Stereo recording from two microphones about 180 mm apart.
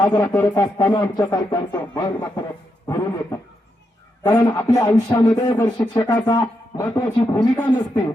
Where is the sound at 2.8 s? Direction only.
20° left (ahead or behind).